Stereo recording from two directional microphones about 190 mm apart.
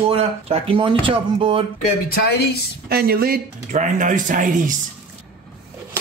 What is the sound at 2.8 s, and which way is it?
Speech, 55° right (ahead or behind).